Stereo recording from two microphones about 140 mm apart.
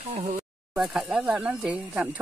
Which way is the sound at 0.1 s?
55° right (ahead or behind).